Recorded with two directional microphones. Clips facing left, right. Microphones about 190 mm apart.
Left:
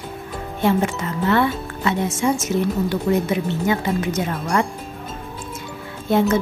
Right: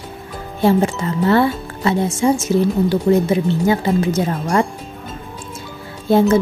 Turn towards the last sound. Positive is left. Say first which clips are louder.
# right 4 dB
turn(degrees=-35)  # may be behind; listen again after turning